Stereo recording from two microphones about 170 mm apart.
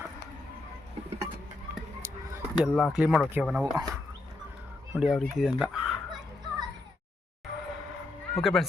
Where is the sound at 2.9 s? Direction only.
5° right (ahead or behind).